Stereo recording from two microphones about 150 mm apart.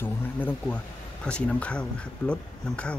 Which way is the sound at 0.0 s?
10° left (ahead or behind).